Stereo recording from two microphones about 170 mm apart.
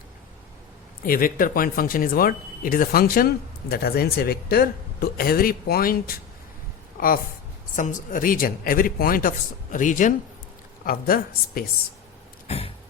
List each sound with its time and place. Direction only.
1.0 s speech: 55° left (ahead or behind)
7.8 s speech: 50° left (ahead or behind)
12.5 s a sound: 35° left (ahead or behind)